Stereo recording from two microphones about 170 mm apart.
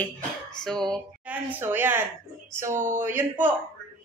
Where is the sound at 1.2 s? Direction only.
10° right (ahead or behind).